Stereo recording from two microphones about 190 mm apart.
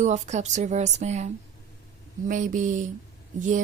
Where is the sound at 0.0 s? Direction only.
40° right (ahead or behind).